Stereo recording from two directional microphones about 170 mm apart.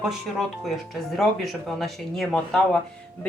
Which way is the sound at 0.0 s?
Centre (ahead or behind).